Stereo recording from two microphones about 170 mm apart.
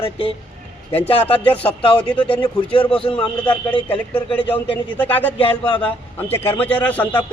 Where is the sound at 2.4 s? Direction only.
30° left (ahead or behind).